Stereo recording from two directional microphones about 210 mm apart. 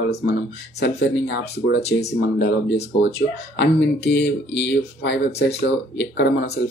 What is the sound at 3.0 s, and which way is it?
Speech, 50° left (ahead or behind).